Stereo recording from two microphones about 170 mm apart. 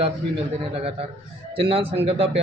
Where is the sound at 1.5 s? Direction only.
35° right (ahead or behind).